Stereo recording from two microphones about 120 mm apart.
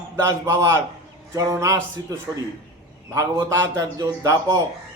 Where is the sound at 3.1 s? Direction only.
25° right (ahead or behind).